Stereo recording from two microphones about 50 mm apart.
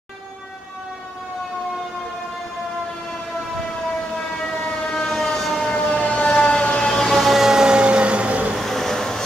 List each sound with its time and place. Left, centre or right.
4.2 s siren: centre
4.8 s vehicle: centre
6.9 s vehicle: centre; by 8.5 s right
8.5 s vehicle: centre